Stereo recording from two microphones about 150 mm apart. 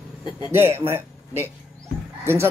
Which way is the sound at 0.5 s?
15° right (ahead or behind).